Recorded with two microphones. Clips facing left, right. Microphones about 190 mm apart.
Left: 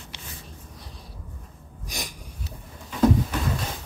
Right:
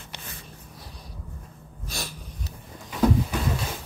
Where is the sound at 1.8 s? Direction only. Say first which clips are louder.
Even; 15° left (ahead or behind).